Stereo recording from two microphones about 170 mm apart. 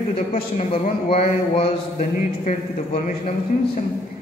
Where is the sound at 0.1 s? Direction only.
35° left (ahead or behind).